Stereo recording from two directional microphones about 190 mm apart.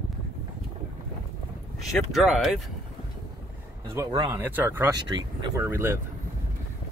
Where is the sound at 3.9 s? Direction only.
20° right (ahead or behind).